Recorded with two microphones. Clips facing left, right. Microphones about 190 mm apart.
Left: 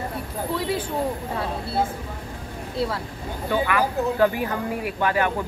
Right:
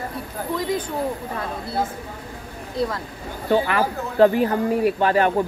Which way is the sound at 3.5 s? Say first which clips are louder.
Right 3 dB; 40° right (ahead or behind).